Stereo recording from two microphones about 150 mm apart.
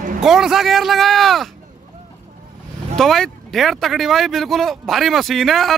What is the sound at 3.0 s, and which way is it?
Speech, centre (ahead or behind).